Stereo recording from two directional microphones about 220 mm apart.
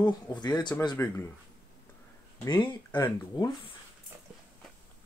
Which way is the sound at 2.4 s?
20° left (ahead or behind).